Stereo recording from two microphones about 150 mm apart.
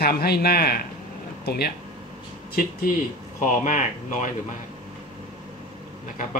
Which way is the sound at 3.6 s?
55° left (ahead or behind).